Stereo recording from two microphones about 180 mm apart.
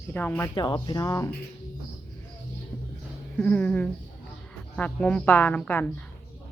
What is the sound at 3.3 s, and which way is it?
Speech, 10° left (ahead or behind).